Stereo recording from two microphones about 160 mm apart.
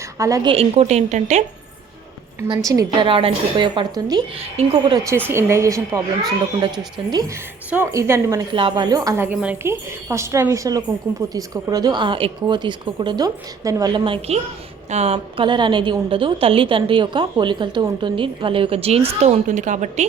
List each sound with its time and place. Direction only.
0.2 s a woman's voice: 20° right (ahead or behind)
0.5 s speech: 40° right (ahead or behind)
2.6 s a woman's voice: 20° right (ahead or behind)
3.1 s a woman's voice: 35° right (ahead or behind)
4.4 s a woman's voice: 35° right (ahead or behind)
5.3 s a woman's voice: 15° right (ahead or behind)
7.1 s a woman's voice: 25° right (ahead or behind)
8.5 s a woman's voice: 30° right (ahead or behind); by 20.1 s 50° right (ahead or behind)